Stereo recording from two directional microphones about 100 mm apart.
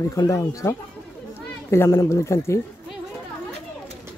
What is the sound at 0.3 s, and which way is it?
Speech, 35° left (ahead or behind).